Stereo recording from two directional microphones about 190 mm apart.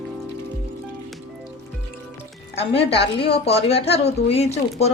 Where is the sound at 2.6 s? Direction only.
30° left (ahead or behind).